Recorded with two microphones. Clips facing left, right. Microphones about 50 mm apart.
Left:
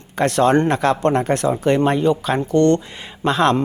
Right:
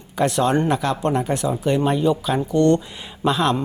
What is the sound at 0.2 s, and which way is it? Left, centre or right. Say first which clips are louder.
Speech: left 3 dB; left.